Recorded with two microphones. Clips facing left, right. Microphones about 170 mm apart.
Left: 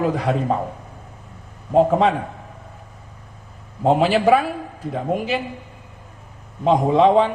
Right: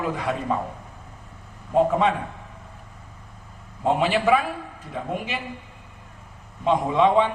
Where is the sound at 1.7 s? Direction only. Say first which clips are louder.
Left 4 dB; 35° left (ahead or behind).